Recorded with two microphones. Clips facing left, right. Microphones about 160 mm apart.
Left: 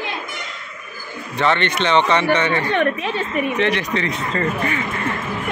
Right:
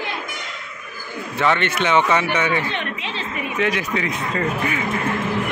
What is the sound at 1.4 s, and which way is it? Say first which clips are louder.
A man's voice: left 1 dB; 5° right (ahead or behind).